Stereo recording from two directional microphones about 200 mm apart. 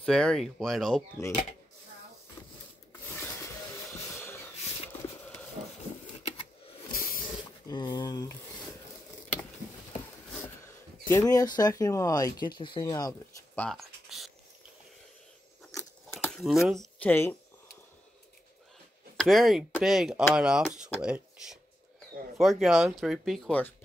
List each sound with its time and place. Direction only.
0.0 s speech: 5° left (ahead or behind)
6.9 s snake: 45° left (ahead or behind)
7.6 s speech: 20° left (ahead or behind)
10.3 s speech: 10° left (ahead or behind)
13.6 s a sound: centre (ahead or behind)
16.2 s speech: centre (ahead or behind)
19.1 s speech: centre (ahead or behind)